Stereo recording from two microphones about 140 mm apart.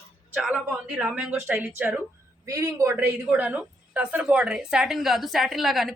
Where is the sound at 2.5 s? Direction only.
25° right (ahead or behind).